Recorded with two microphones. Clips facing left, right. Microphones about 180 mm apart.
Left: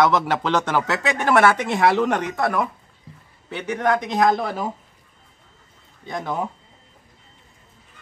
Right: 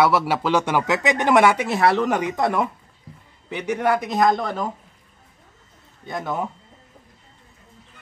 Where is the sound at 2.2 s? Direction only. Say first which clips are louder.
Right 1 dB; 20° right (ahead or behind); by 4.7 s 5° left (ahead or behind).